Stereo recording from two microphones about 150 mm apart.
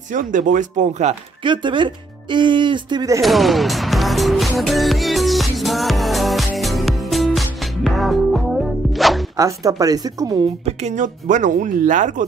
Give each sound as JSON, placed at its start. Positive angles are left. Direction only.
{"t": 0.1, "sound": "speech", "side_deg": -60}
{"t": 1.4, "sound": "speech", "side_deg": -30}
{"t": 3.2, "sound": "music", "side_deg": 0}
{"t": 9.4, "sound": "speech", "side_deg": -25}
{"t": 10.6, "sound": "speech", "side_deg": -50}